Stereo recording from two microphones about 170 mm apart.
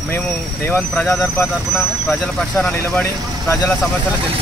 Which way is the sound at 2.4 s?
5° left (ahead or behind).